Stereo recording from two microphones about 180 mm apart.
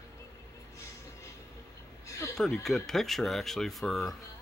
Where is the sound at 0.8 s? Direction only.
15° left (ahead or behind).